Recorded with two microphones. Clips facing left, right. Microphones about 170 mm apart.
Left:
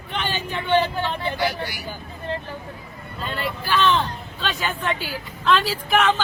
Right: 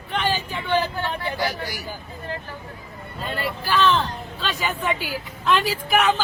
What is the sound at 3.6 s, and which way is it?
A woman's voice, 5° right (ahead or behind).